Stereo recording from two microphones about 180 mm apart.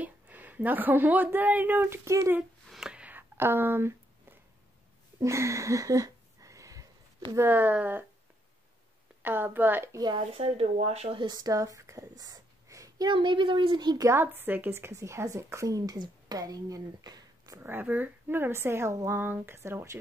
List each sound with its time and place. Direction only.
0.0 s a woman's voice: 10° right (ahead or behind)
2.7 s a sound: 5° right (ahead or behind)
7.3 s speech: 10° right (ahead or behind)
9.2 s speech: 10° right (ahead or behind)
10.0 s speech: 30° right (ahead or behind); by 20.0 s 15° right (ahead or behind)